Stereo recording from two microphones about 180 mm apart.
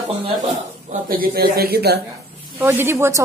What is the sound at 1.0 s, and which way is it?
Speech, 55° right (ahead or behind).